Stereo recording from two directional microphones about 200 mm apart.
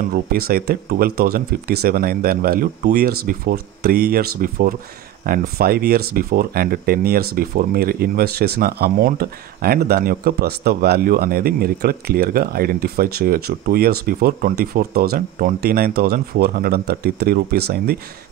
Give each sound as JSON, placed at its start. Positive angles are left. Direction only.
{"t": 0.1, "sound": "speech", "side_deg": -50}